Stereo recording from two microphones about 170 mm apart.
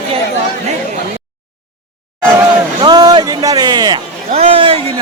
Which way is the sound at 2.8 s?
25° right (ahead or behind).